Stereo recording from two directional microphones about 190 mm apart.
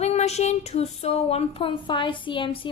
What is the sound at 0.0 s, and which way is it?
Speech, 35° left (ahead or behind).